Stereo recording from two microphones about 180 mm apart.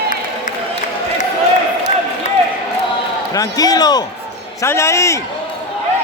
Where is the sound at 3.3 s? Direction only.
20° left (ahead or behind).